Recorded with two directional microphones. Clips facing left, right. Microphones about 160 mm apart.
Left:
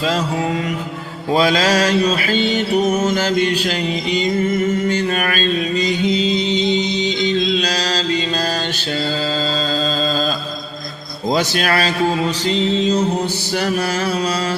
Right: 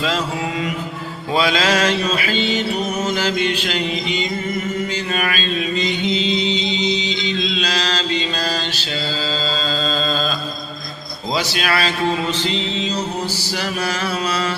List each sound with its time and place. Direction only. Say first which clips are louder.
1.3 s mantra: left 3 dB; 40° left (ahead or behind)
6.1 s music: left 3 dB; 45° left (ahead or behind)
11.3 s mantra: left 4 dB; 50° left (ahead or behind)